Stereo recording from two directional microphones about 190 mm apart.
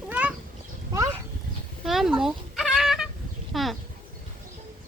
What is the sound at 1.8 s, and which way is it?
Fowl, centre (ahead or behind).